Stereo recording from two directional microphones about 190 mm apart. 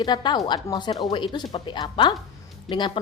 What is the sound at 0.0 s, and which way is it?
A woman's voice, 20° left (ahead or behind).